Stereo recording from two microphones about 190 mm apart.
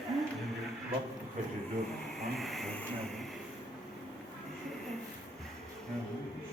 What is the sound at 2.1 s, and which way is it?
Vehicle, centre (ahead or behind).